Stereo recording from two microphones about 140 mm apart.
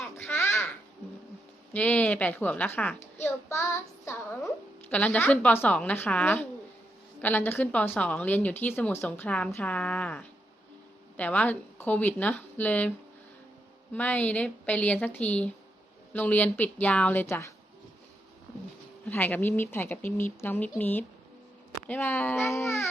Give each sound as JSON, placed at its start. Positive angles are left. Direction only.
{"t": 0.2, "sound": "babbling", "side_deg": 20}
{"t": 1.7, "sound": "a child's voice", "side_deg": 10}
{"t": 13.9, "sound": "a woman's voice", "side_deg": 10}
{"t": 19.0, "sound": "a woman's voice", "side_deg": 15}